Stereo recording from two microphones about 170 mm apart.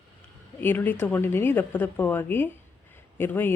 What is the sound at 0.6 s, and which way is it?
Speech, 10° left (ahead or behind).